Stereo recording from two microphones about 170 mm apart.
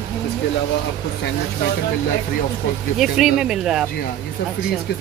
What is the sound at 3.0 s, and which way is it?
Speech, centre (ahead or behind).